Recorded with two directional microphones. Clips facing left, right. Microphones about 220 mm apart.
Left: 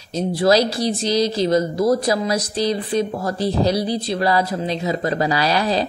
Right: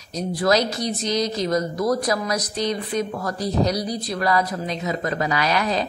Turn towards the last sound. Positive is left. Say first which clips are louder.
# left 3 dB
turn(degrees=30)  # may be behind; listen again after turning